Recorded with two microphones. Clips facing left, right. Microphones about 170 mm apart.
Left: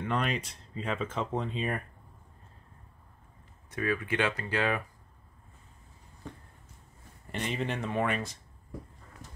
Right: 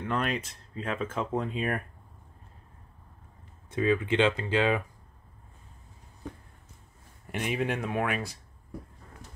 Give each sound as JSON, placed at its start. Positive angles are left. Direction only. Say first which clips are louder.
{"t": 0.0, "sound": "speech", "louder": "right 1 dB", "side_deg": -5}
{"t": 3.7, "sound": "speech", "louder": "right 5 dB", "side_deg": -20}
{"t": 7.2, "sound": "speech", "louder": "right 3 dB", "side_deg": -10}